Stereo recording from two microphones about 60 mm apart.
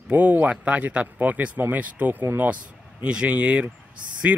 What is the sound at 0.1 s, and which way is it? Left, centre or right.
Speech, right.